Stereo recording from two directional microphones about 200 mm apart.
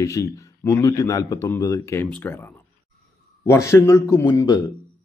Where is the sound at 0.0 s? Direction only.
15° left (ahead or behind).